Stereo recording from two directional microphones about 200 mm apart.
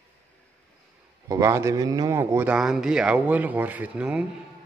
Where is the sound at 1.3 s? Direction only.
15° right (ahead or behind).